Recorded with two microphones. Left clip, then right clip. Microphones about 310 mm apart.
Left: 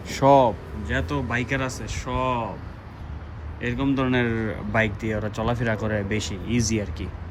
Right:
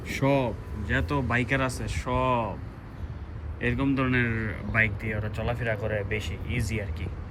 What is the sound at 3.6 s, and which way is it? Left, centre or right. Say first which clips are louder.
Speech: left 2 dB; centre.